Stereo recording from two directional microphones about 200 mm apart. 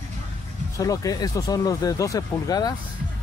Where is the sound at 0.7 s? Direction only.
15° left (ahead or behind).